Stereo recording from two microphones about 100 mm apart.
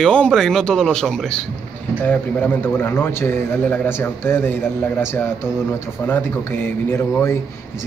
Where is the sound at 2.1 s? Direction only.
20° left (ahead or behind).